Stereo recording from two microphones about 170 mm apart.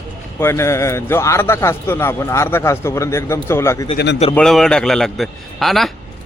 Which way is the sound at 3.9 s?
85° left.